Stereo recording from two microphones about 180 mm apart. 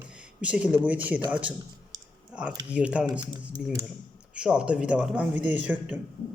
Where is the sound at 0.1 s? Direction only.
5° right (ahead or behind).